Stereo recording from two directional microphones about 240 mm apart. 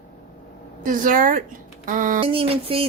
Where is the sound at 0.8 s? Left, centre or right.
Right.